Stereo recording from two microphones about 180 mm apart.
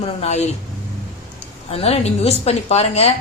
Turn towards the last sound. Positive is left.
turn(degrees=35)  # may be behind; listen again after turning